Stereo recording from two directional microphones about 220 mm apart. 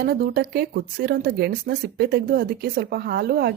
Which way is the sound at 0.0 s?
45° right (ahead or behind).